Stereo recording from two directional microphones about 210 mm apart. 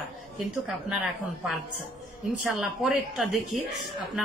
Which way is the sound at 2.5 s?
Centre (ahead or behind).